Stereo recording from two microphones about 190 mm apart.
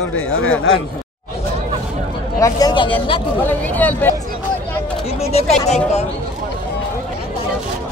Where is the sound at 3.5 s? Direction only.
10° left (ahead or behind).